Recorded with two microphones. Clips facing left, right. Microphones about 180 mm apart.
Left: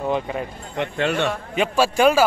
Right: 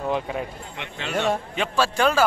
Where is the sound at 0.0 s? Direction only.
Centre (ahead or behind).